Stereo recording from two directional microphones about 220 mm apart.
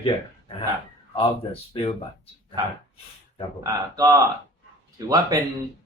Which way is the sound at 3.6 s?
15° right (ahead or behind).